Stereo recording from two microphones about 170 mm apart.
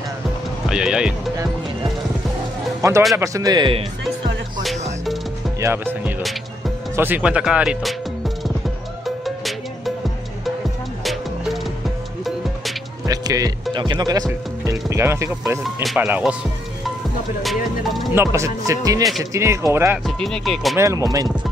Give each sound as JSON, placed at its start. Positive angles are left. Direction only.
{"t": 0.7, "sound": "speech", "side_deg": -5}
{"t": 3.2, "sound": "speech", "side_deg": -20}
{"t": 5.6, "sound": "music", "side_deg": -15}
{"t": 7.0, "sound": "speech", "side_deg": -10}
{"t": 9.0, "sound": "music", "side_deg": 0}
{"t": 11.1, "sound": "music", "side_deg": 0}
{"t": 13.0, "sound": "speech", "side_deg": -20}
{"t": 15.6, "sound": "music", "side_deg": 0}
{"t": 16.1, "sound": "speech", "side_deg": -5}
{"t": 17.4, "sound": "music", "side_deg": 0}
{"t": 18.1, "sound": "speech", "side_deg": -15}
{"t": 20.1, "sound": "music", "side_deg": 0}
{"t": 20.7, "sound": "speech", "side_deg": -15}